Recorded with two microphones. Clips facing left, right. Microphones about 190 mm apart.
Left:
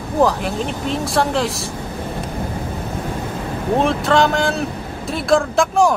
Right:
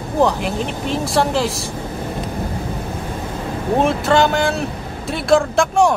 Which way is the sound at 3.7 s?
Centre (ahead or behind).